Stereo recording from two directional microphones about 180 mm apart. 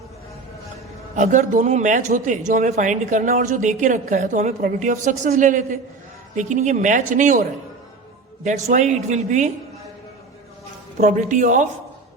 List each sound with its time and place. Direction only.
1.1 s a man's voice: 45° right (ahead or behind)
8.4 s speech: 40° right (ahead or behind)
11.0 s a man's voice: 45° right (ahead or behind)